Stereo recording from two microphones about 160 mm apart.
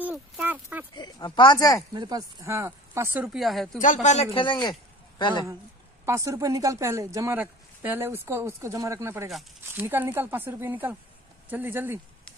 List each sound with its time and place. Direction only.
0.0 s a sound: 10° right (ahead or behind)
0.9 s speech: 25° left (ahead or behind)
2.0 s speech: 25° right (ahead or behind)
3.3 s speech: centre (ahead or behind)
3.8 s speech: 50° left (ahead or behind); by 4.7 s 30° left (ahead or behind)
6.0 s speech: 20° right (ahead or behind)